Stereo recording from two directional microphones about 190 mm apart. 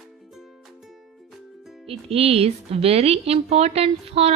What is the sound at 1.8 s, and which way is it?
Speech, 30° right (ahead or behind).